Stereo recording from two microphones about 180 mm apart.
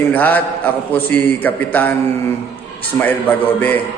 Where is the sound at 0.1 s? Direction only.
10° left (ahead or behind).